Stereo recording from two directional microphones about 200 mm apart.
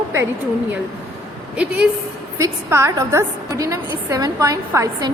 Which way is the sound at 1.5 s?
5° right (ahead or behind).